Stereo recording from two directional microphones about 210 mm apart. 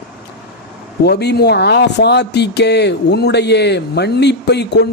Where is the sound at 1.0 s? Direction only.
50° left (ahead or behind).